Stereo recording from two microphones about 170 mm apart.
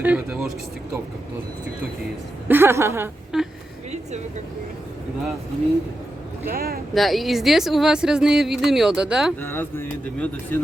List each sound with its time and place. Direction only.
0.0 s a woman's voice: 5° right (ahead or behind)
2.5 s a woman's voice: 15° right (ahead or behind)
3.3 s a woman's voice: 5° right (ahead or behind)
6.5 s speech: 60° right (ahead or behind)
6.9 s a woman's voice: centre (ahead or behind)
9.4 s speech: 15° left (ahead or behind)